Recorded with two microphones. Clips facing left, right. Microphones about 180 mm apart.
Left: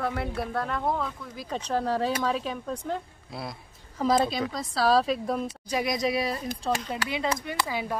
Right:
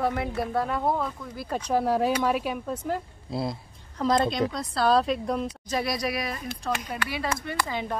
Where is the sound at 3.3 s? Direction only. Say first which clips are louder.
Right 7 dB; 25° right (ahead or behind).